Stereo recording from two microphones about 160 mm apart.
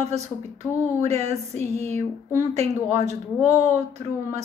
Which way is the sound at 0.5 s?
40° right (ahead or behind).